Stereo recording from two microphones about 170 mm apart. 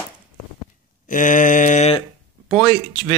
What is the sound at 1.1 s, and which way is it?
Speech, 50° left (ahead or behind).